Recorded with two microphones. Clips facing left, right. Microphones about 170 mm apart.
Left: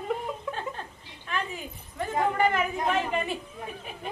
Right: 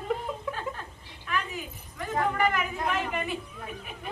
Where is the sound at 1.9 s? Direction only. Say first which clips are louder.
Left 2 dB; 25° left (ahead or behind).